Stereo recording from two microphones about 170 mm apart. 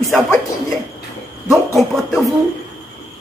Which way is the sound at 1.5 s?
Centre (ahead or behind).